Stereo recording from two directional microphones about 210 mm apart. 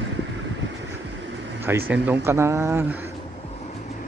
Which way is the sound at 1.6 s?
10° right (ahead or behind).